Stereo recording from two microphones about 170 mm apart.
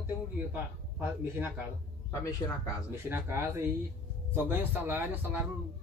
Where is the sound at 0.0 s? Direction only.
10° right (ahead or behind).